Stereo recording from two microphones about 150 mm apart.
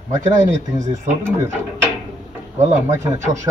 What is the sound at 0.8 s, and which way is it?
Speech, 20° right (ahead or behind).